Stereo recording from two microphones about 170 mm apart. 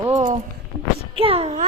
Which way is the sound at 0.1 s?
45° right (ahead or behind).